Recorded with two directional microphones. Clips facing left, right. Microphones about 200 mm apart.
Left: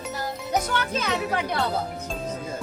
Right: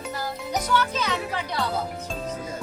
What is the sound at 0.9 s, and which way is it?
Music, 50° left (ahead or behind).